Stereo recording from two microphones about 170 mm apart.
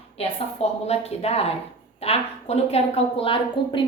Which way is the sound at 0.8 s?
35° left (ahead or behind).